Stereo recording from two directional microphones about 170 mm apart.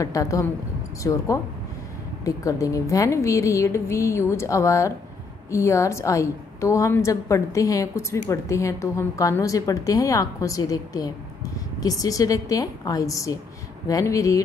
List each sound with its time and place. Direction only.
0.0 s a woman's voice: 20° left (ahead or behind)